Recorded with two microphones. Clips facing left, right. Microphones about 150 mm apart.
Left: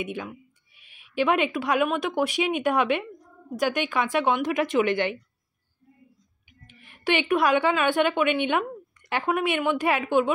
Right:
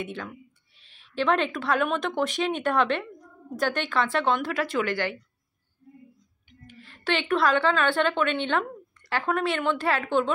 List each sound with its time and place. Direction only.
0.0 s a woman's voice: 15° left (ahead or behind)
6.7 s a woman's voice: 15° left (ahead or behind)